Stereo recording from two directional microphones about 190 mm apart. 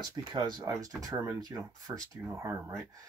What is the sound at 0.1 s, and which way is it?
Speech, 20° right (ahead or behind).